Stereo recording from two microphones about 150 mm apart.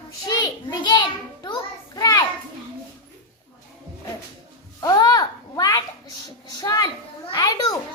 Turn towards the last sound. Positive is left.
turn(degrees=25)  # may be behind; listen again after turning